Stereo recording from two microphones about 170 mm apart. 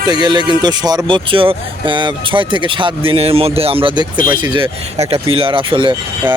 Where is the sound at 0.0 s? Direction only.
25° right (ahead or behind).